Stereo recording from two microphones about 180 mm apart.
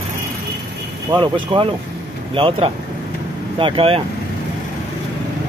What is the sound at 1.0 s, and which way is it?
Speech, 25° right (ahead or behind).